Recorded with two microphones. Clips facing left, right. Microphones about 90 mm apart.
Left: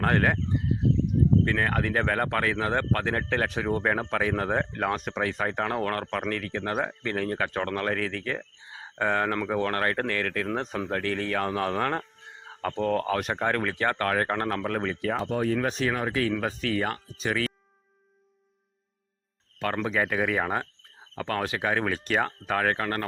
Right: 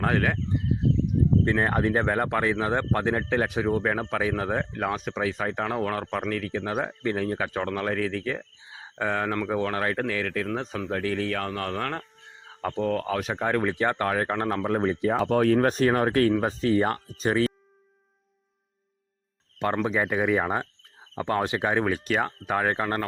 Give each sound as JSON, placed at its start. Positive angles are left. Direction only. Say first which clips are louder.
{"t": 0.0, "sound": "a sound", "louder": "left 1 dB", "side_deg": 0}
{"t": 1.5, "sound": "speech", "louder": "right 3 dB", "side_deg": -25}
{"t": 12.6, "sound": "speech", "louder": "even", "side_deg": -5}
{"t": 13.4, "sound": "speech", "louder": "right 2 dB", "side_deg": -10}
{"t": 14.8, "sound": "speech", "louder": "right 4 dB", "side_deg": -25}
{"t": 15.2, "sound": "speech", "louder": "right 7 dB", "side_deg": -70}
{"t": 15.5, "sound": "speech", "louder": "right 6 dB", "side_deg": -45}
{"t": 16.3, "sound": "speech", "louder": "right 5 dB", "side_deg": -25}
{"t": 19.6, "sound": "speech", "louder": "right 3 dB", "side_deg": -20}
{"t": 20.0, "sound": "speech", "louder": "left 1 dB", "side_deg": -5}
{"t": 20.3, "sound": "speech", "louder": "right 3 dB", "side_deg": -15}
{"t": 21.8, "sound": "speech", "louder": "right 1 dB", "side_deg": -10}